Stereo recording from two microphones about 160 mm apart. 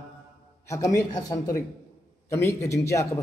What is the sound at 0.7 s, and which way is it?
A man's voice, 20° left (ahead or behind).